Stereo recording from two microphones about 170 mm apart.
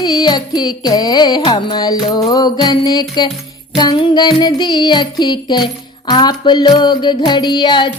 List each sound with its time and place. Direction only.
0.0 s music: 25° left (ahead or behind)